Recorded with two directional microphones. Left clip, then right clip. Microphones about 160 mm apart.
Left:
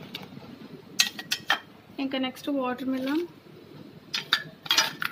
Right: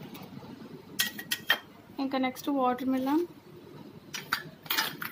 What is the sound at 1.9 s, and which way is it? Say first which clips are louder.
A woman's voice: even; 20° right (ahead or behind).